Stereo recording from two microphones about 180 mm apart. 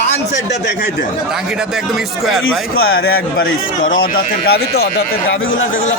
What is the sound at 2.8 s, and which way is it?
A man's voice, 60° left (ahead or behind).